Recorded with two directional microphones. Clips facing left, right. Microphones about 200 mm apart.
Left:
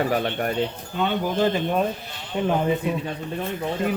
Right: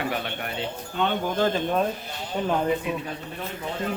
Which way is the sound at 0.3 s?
45° left (ahead or behind).